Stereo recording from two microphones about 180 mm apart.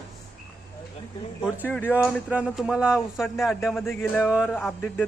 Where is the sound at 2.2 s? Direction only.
5° right (ahead or behind).